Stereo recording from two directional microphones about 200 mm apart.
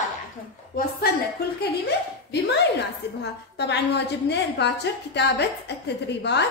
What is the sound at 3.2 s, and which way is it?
A woman's voice, 60° left (ahead or behind).